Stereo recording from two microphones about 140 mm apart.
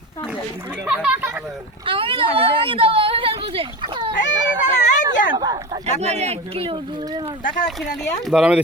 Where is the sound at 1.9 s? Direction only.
40° right (ahead or behind).